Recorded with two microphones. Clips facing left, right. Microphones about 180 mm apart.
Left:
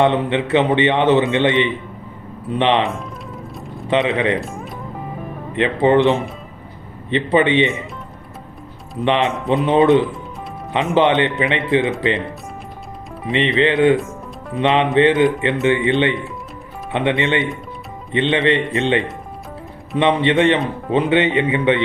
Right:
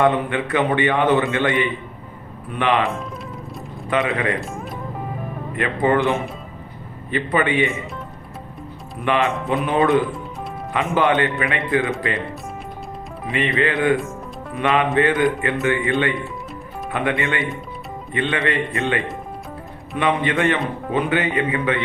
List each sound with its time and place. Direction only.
0.0 s speech: 25° left (ahead or behind)
4.4 s music: centre (ahead or behind)
5.5 s speech: 25° left (ahead or behind)
9.0 s speech: 25° left (ahead or behind)
13.3 s speech: 25° left (ahead or behind)